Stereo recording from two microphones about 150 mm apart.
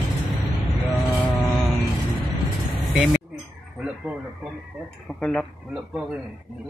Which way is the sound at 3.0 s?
5° right (ahead or behind).